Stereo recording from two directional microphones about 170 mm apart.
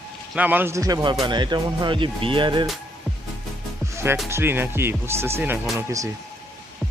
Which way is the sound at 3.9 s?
15° right (ahead or behind).